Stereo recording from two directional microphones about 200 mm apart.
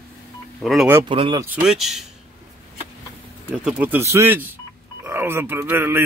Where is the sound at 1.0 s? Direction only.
25° right (ahead or behind).